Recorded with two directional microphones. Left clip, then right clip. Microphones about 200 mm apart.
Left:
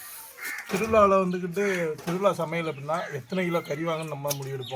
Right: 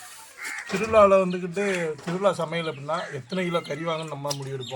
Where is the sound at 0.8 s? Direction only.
15° right (ahead or behind).